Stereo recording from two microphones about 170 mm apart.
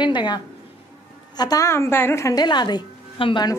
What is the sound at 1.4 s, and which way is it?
A woman's voice, 20° left (ahead or behind).